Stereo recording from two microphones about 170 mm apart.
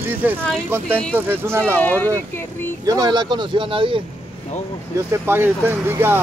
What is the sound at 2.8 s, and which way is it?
Speech, 25° right (ahead or behind).